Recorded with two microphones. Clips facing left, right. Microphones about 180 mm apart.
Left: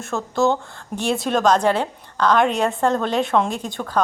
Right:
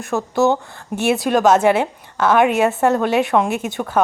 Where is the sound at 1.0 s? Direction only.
Centre (ahead or behind).